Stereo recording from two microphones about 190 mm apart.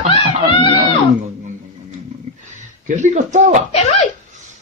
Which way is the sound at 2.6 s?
40° right (ahead or behind).